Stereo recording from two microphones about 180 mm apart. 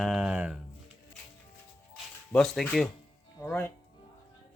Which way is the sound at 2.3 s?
5° left (ahead or behind).